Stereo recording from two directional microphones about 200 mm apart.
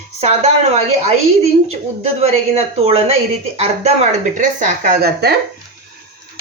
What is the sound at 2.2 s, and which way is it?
A woman's voice, 30° right (ahead or behind).